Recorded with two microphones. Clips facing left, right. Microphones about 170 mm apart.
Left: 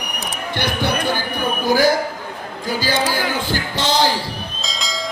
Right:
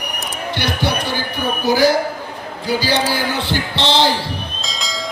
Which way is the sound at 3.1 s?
45° left (ahead or behind).